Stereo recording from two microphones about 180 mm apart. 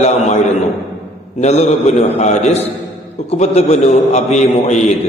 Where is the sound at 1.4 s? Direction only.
40° left (ahead or behind).